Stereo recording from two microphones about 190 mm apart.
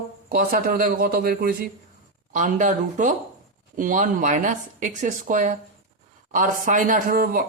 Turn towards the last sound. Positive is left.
turn(degrees=-50)  # may be behind; listen again after turning